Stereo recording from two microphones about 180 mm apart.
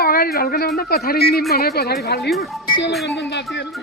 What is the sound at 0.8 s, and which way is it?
A woman's voice, 55° left (ahead or behind).